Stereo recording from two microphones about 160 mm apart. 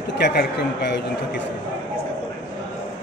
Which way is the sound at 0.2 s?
85° left.